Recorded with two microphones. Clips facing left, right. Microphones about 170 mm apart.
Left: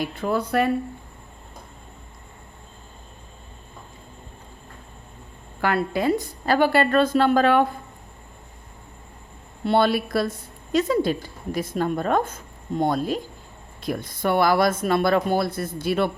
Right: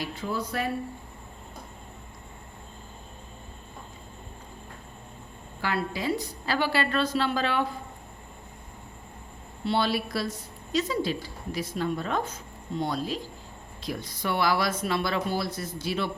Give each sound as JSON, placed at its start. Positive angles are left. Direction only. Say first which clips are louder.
{"t": 0.0, "sound": "speech", "louder": "left 7 dB", "side_deg": 55}
{"t": 5.6, "sound": "a woman's voice", "louder": "left 7 dB", "side_deg": 55}
{"t": 9.6, "sound": "a woman's voice", "louder": "left 6 dB", "side_deg": 55}